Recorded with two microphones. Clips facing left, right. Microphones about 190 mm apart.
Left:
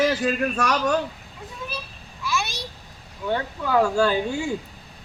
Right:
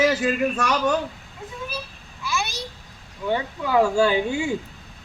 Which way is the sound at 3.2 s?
10° right (ahead or behind).